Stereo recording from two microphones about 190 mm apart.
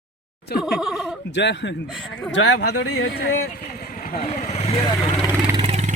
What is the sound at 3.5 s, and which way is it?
Vehicle, 50° left (ahead or behind).